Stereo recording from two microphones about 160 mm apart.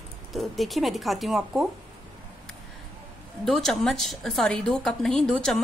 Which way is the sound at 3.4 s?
Centre (ahead or behind).